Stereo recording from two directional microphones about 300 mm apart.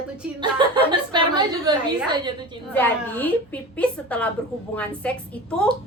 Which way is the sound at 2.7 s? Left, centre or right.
Centre.